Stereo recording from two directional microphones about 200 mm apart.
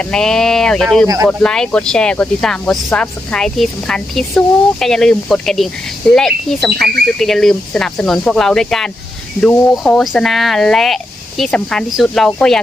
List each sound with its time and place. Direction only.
0.0 s speech: 5° left (ahead or behind)
1.0 s speech: 15° right (ahead or behind)
1.3 s speech: 5° left (ahead or behind)